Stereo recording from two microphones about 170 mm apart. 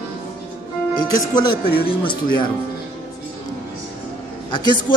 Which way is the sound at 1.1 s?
25° left (ahead or behind).